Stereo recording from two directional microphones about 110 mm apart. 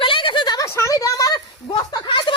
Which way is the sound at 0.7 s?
25° left (ahead or behind).